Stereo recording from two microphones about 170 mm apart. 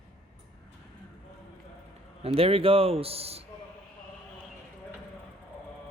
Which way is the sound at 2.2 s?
35° right (ahead or behind).